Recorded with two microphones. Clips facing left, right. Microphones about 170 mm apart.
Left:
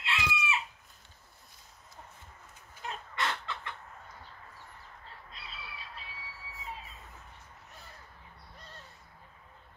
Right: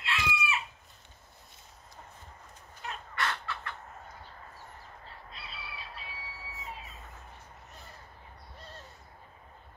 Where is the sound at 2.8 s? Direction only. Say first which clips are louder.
Even; 20° left (ahead or behind).